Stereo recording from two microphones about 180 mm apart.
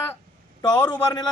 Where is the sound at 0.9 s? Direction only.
25° left (ahead or behind).